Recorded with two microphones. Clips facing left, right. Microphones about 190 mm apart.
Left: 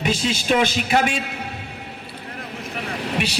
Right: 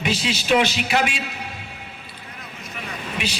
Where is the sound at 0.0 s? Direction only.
50° left (ahead or behind).